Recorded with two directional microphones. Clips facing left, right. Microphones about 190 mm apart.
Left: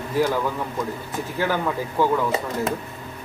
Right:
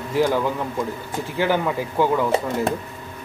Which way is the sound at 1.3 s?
15° right (ahead or behind).